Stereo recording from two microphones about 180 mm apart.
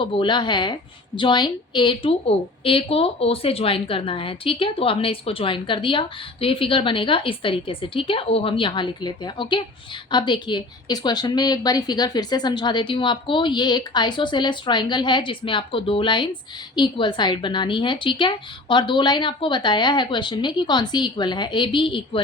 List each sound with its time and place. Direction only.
0.0 s a woman's voice: 25° left (ahead or behind)